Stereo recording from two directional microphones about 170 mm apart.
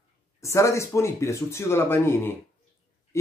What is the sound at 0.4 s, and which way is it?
Speech, 15° left (ahead or behind).